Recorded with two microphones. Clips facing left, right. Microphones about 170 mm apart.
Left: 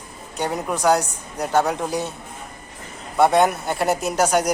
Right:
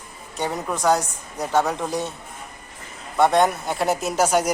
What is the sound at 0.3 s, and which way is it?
Speech, centre (ahead or behind).